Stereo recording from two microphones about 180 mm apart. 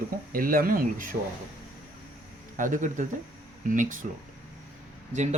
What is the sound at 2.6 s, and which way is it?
Speech, 45° right (ahead or behind).